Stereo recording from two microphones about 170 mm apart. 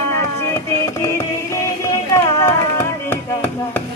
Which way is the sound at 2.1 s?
15° left (ahead or behind).